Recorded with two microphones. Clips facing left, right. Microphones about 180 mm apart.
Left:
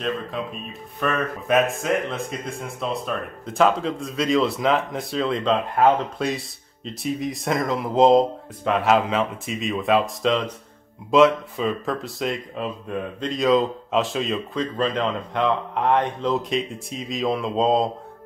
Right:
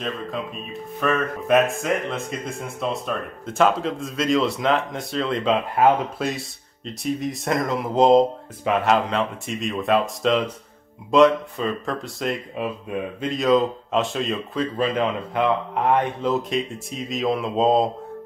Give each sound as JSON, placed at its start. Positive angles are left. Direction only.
{"t": 1.0, "sound": "speech", "side_deg": 0}